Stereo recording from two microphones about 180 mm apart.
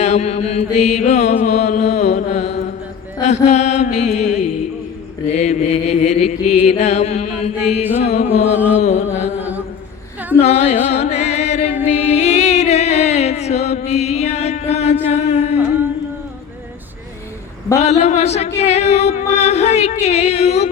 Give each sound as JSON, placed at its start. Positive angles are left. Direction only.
{"t": 0.0, "sound": "mantra", "side_deg": 40}
{"t": 8.7, "sound": "music", "side_deg": 40}
{"t": 10.4, "sound": "music", "side_deg": 35}
{"t": 17.7, "sound": "mantra", "side_deg": 40}